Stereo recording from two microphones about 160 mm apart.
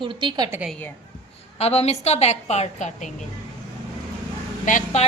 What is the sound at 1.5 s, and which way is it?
A woman's voice, 40° left (ahead or behind).